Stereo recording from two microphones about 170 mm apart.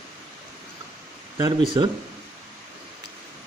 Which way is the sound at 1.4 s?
25° right (ahead or behind).